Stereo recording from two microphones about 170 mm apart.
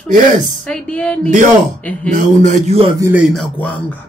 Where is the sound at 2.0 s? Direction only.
45° right (ahead or behind).